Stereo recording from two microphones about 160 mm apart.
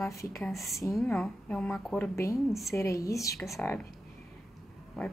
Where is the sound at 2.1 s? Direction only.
20° left (ahead or behind).